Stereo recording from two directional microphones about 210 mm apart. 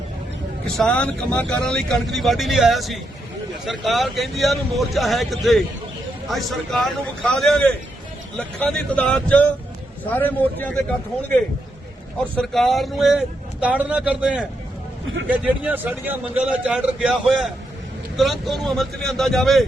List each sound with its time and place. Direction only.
0.6 s speech: 5° left (ahead or behind)
12.4 s speech: centre (ahead or behind)